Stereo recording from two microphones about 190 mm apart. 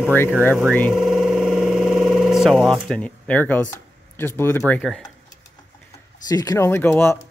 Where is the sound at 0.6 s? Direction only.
5° left (ahead or behind).